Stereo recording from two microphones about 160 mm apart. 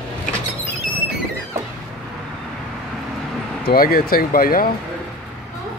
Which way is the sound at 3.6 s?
70° left (ahead or behind).